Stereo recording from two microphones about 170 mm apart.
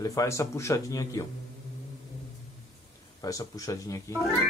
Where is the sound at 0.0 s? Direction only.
20° left (ahead or behind).